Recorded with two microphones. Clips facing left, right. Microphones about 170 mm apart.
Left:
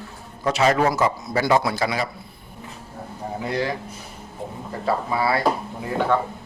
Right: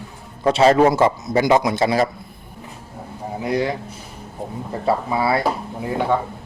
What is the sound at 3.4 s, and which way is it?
Speech, 20° right (ahead or behind).